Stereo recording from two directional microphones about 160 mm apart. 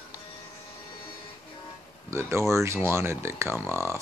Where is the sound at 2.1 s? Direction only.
15° right (ahead or behind).